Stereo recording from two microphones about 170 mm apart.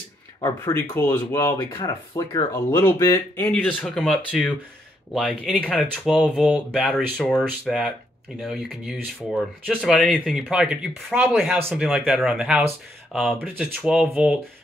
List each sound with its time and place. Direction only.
0.4 s speech: 20° left (ahead or behind)
3.6 s speech: centre (ahead or behind)
5.5 s speech: 5° left (ahead or behind)